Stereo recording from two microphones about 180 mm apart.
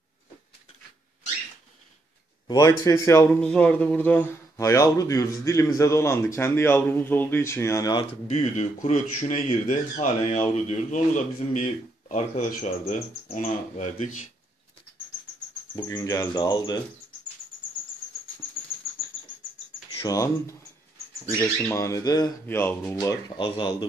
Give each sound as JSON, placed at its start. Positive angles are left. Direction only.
{"t": 2.4, "sound": "cricket", "side_deg": 20}
{"t": 3.3, "sound": "speech", "side_deg": 5}
{"t": 8.3, "sound": "a man's voice", "side_deg": 40}
{"t": 15.7, "sound": "cricket", "side_deg": 20}
{"t": 20.0, "sound": "cricket", "side_deg": 20}
{"t": 21.4, "sound": "speech", "side_deg": 15}